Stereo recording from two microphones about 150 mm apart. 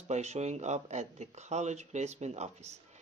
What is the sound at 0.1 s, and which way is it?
Speech, 50° right (ahead or behind).